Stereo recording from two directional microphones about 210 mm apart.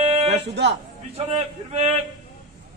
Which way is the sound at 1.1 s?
30° right (ahead or behind).